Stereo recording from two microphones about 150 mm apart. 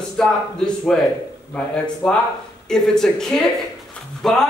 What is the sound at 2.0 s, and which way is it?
Speech, 5° left (ahead or behind).